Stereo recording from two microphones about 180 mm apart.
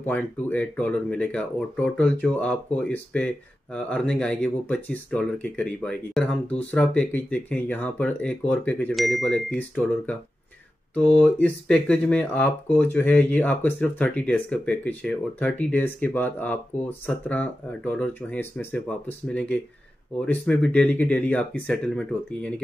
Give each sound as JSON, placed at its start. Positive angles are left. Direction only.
{"t": 0.0, "sound": "speech", "side_deg": 10}